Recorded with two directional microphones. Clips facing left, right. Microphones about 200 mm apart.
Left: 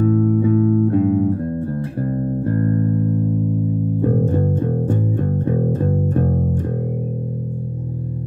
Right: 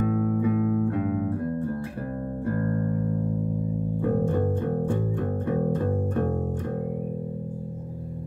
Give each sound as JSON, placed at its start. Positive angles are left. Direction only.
{"t": 0.0, "sound": "music", "side_deg": 35}